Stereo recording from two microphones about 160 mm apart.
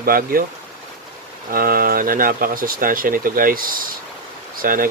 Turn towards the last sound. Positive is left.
turn(degrees=-60)  # may be behind; listen again after turning